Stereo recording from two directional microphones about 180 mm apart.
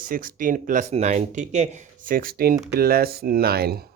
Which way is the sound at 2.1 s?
55° right (ahead or behind).